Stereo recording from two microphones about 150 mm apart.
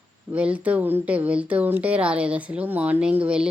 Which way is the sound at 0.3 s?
10° right (ahead or behind).